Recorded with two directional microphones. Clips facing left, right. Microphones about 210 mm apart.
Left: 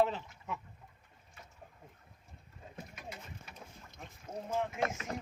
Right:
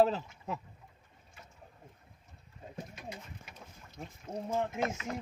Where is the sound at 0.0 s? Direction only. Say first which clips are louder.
Right 4 dB; 35° right (ahead or behind).